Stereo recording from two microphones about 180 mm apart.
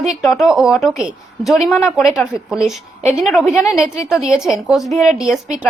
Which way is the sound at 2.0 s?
Centre (ahead or behind).